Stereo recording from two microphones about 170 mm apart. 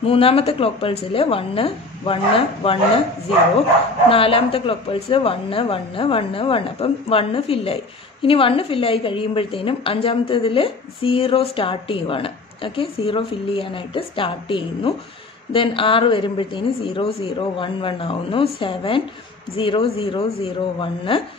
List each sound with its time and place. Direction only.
0.0 s a woman's voice: 35° left (ahead or behind)
4.1 s a woman's voice: 35° left (ahead or behind)